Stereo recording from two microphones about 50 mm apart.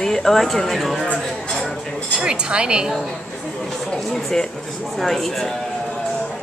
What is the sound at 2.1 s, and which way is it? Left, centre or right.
Speech, centre.